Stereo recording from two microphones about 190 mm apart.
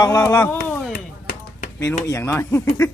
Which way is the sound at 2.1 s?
15° left (ahead or behind).